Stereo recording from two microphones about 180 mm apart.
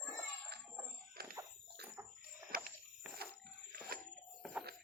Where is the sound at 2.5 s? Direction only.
55° right (ahead or behind).